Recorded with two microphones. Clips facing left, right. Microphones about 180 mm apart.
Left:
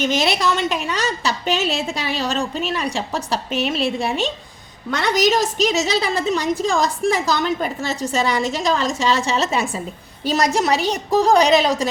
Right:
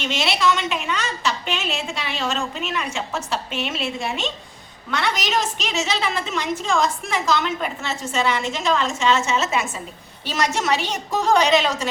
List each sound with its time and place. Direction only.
0.0 s a woman's voice: 40° left (ahead or behind)